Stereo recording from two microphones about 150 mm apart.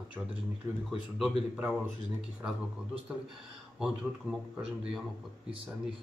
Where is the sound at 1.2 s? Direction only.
5° right (ahead or behind).